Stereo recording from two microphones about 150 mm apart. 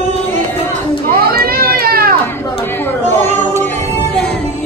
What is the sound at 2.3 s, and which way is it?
Chatter, 15° left (ahead or behind).